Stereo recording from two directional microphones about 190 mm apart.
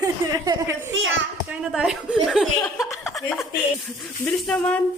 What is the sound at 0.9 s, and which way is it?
Speech, 90° right.